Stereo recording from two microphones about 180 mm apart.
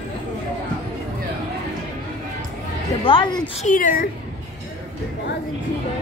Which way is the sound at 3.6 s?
45° left (ahead or behind).